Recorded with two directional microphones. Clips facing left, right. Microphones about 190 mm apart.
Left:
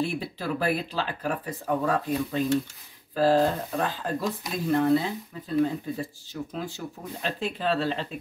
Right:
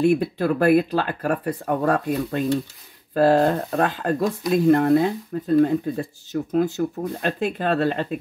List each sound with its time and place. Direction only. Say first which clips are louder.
0.0 s speech: right 10 dB; 60° right (ahead or behind)